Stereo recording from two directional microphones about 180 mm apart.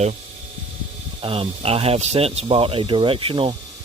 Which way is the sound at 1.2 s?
30° right (ahead or behind).